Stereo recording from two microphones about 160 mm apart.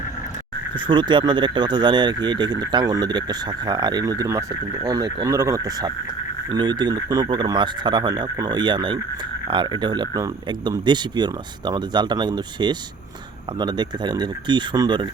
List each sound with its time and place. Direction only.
0.8 s speech: 30° right (ahead or behind)